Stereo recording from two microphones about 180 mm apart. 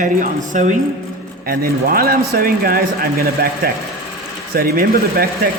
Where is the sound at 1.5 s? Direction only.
55° right (ahead or behind).